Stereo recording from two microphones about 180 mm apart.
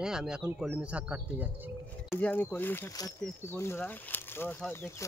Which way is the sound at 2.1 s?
10° left (ahead or behind).